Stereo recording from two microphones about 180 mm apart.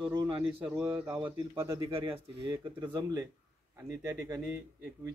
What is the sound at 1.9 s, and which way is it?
Speech, 30° right (ahead or behind).